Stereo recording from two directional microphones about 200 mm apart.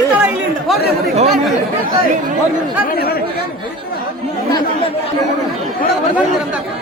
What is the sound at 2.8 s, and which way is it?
Speech, 50° left (ahead or behind).